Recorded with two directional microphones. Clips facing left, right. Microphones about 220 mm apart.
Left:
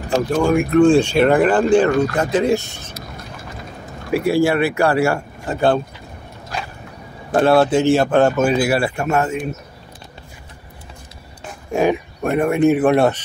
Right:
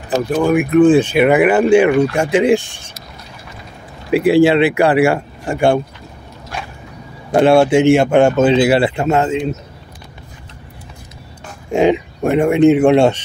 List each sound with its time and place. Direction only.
0.6 s speech: 5° right (ahead or behind)
4.1 s speech: 20° right (ahead or behind)
7.3 s speech: 15° right (ahead or behind)
11.7 s speech: 20° right (ahead or behind)